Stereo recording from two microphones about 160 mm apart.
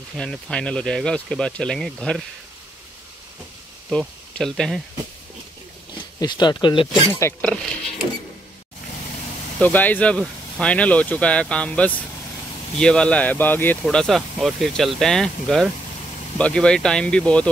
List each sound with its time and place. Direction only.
0.2 s speech: 5° left (ahead or behind)
4.4 s speech: 5° left (ahead or behind)
6.1 s speech: 25° left (ahead or behind)
7.1 s speech: 20° left (ahead or behind)
9.6 s speech: 10° left (ahead or behind)